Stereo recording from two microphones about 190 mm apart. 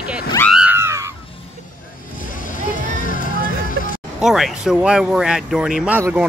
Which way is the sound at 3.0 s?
45° left (ahead or behind).